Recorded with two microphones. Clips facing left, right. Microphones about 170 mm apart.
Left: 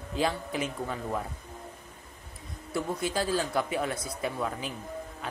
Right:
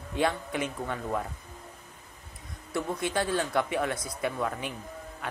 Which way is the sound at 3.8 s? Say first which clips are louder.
Right 1 dB; 25° left (ahead or behind).